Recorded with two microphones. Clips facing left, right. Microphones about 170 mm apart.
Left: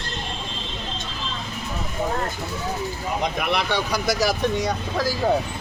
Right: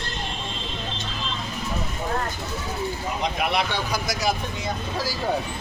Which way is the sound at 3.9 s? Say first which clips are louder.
Left 3 dB; 85° left.